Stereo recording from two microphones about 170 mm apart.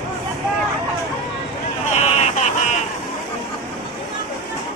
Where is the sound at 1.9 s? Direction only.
40° left (ahead or behind).